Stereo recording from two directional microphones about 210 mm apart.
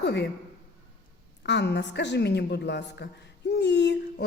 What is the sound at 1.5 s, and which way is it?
Speech, 55° left (ahead or behind).